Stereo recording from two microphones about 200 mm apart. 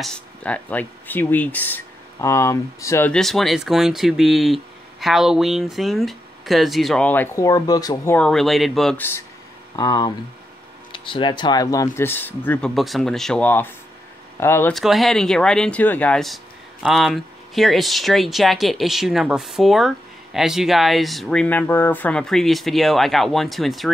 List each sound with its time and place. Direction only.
0.0 s speech: 5° left (ahead or behind)
14.7 s speech: centre (ahead or behind)